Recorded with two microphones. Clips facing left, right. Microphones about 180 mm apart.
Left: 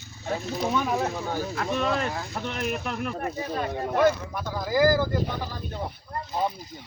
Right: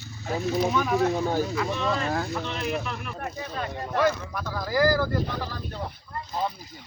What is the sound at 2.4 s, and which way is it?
Speech, 50° left (ahead or behind).